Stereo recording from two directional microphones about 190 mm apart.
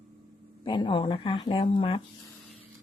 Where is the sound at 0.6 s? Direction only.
25° left (ahead or behind).